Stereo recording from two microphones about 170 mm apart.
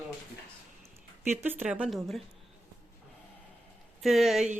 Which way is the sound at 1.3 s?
10° right (ahead or behind).